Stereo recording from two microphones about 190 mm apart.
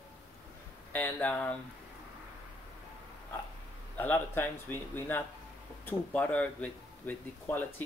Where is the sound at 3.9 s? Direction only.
10° left (ahead or behind).